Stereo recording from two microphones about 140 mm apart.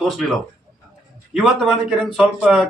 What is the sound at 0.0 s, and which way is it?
Speech, centre (ahead or behind).